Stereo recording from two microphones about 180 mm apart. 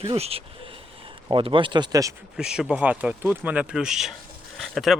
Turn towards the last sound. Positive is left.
turn(degrees=0)  # may be behind; listen again after turning